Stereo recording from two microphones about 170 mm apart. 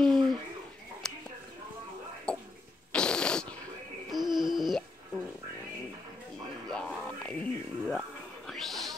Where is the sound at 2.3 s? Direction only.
5° left (ahead or behind).